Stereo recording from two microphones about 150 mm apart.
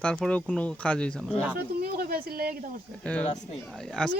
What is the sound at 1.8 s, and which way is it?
Speech, 90° right.